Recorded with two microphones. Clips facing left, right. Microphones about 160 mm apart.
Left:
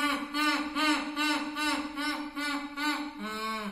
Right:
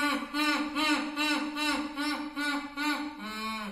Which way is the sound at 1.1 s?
20° right (ahead or behind).